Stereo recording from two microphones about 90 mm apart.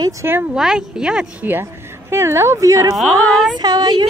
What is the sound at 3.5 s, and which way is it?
Speech, 50° right (ahead or behind).